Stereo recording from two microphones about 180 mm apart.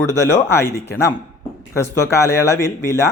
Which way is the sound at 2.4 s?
15° left (ahead or behind).